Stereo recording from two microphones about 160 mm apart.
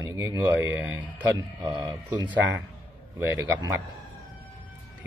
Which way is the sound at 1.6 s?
25° right (ahead or behind).